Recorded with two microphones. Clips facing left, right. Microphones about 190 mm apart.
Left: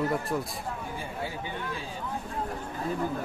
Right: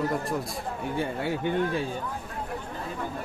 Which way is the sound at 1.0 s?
65° right (ahead or behind).